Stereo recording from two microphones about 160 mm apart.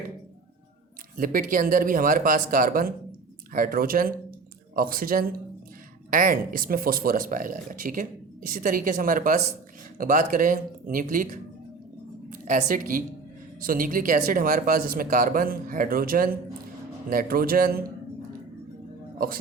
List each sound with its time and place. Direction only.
1.1 s speech: 60° right (ahead or behind)
19.2 s speech: 65° right (ahead or behind)